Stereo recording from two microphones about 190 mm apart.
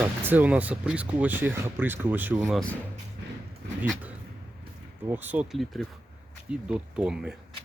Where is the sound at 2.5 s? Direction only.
5° left (ahead or behind).